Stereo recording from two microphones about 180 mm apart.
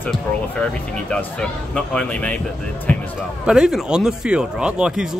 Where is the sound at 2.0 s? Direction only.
5° left (ahead or behind).